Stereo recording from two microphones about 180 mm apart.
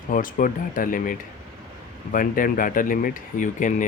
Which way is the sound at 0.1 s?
50° left (ahead or behind).